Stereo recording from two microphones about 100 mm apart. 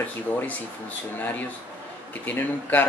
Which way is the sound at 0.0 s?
15° left (ahead or behind).